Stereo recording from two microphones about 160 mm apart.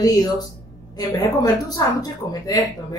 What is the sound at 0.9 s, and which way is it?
Speech, 25° left (ahead or behind).